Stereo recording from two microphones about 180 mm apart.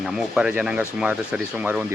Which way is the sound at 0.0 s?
Centre (ahead or behind).